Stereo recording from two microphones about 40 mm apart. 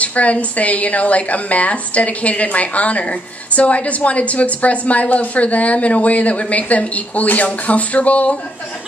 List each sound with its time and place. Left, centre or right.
0.0 s a woman's voice: left